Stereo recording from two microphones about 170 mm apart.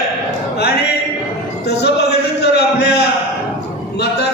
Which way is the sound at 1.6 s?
75° left (ahead or behind).